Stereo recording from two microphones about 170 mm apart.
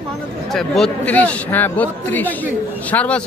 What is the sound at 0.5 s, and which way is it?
Speech, centre (ahead or behind).